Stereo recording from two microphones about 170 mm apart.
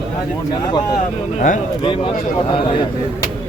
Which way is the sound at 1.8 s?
30° left (ahead or behind).